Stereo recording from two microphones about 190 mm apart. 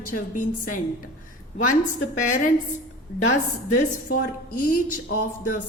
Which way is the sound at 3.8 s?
45° left (ahead or behind).